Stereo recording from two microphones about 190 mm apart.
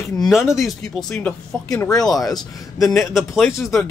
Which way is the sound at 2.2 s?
20° left (ahead or behind).